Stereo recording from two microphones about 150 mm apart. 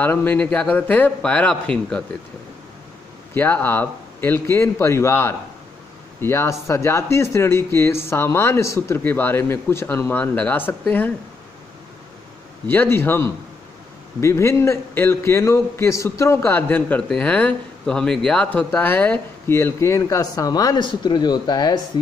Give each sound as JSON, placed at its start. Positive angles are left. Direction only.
{"t": 0.0, "sound": "a man's voice", "side_deg": 15}
{"t": 3.3, "sound": "a man's voice", "side_deg": 15}
{"t": 12.6, "sound": "a man's voice", "side_deg": 15}